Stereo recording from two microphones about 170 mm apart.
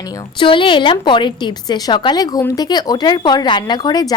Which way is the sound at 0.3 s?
30° left (ahead or behind).